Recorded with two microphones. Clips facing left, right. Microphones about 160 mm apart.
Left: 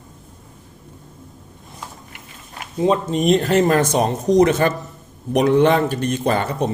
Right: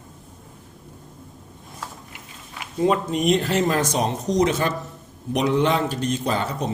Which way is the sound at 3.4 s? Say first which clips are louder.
Left 5 dB; 50° left (ahead or behind).